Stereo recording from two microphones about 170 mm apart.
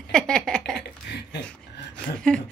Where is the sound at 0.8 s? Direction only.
75° left (ahead or behind).